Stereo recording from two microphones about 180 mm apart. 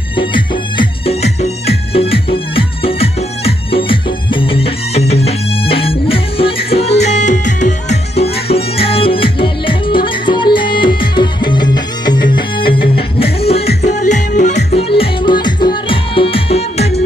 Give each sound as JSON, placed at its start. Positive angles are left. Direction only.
{"t": 0.1, "sound": "music", "side_deg": 25}